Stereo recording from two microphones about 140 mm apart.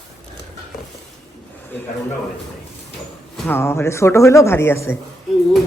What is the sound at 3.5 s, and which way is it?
Speech, 15° left (ahead or behind).